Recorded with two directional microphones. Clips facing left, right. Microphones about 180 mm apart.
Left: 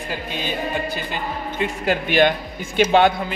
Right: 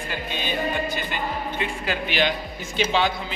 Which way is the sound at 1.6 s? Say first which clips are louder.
Left 9 dB; 45° left (ahead or behind).